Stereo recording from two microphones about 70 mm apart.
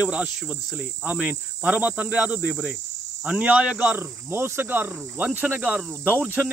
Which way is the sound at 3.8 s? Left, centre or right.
Right.